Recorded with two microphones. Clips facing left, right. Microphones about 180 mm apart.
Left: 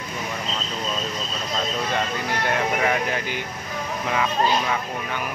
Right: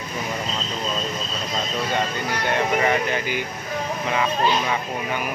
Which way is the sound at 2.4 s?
Centre (ahead or behind).